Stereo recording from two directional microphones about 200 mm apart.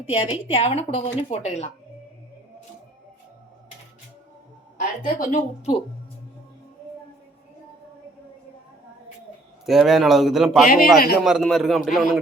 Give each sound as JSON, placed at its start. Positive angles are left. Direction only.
{"t": 0.0, "sound": "a woman's voice", "side_deg": 30}
{"t": 5.2, "sound": "a woman's voice", "side_deg": 40}
{"t": 9.6, "sound": "speech", "side_deg": 0}
{"t": 10.7, "sound": "a man's voice", "side_deg": 45}
{"t": 11.2, "sound": "speech", "side_deg": 0}